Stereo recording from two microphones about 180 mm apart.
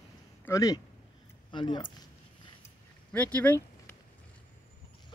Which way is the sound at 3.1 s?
10° left (ahead or behind).